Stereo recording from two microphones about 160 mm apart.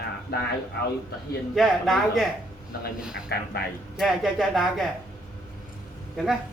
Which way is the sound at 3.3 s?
75° left (ahead or behind).